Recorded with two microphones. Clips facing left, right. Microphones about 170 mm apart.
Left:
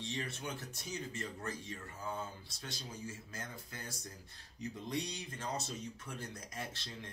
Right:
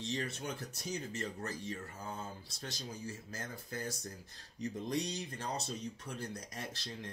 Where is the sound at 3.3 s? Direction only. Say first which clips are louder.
Right 3 dB; 40° right (ahead or behind).